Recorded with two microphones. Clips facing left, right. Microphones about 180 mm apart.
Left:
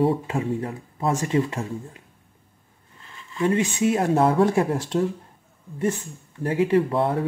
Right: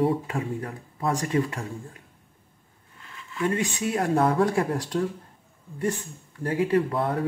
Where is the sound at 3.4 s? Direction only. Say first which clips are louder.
Left 5 dB; 25° left (ahead or behind).